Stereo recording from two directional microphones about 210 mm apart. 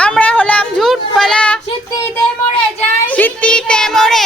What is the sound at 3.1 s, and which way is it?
Child singing, 5° left (ahead or behind).